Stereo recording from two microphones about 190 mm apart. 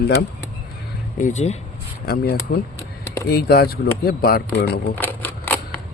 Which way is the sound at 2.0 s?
50° left (ahead or behind).